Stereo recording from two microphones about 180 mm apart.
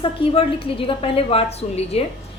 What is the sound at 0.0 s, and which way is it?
A woman's voice, 30° left (ahead or behind).